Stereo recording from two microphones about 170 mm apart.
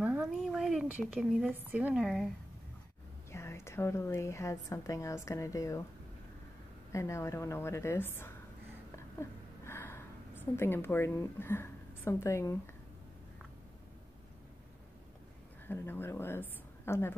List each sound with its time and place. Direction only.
0.0 s a sound: 10° right (ahead or behind)
0.6 s a woman's voice: centre (ahead or behind)
3.3 s a woman's voice: 15° left (ahead or behind)
6.9 s a woman's voice: 15° left (ahead or behind)
8.9 s a sound: 15° left (ahead or behind)
15.6 s a woman's voice: 10° left (ahead or behind)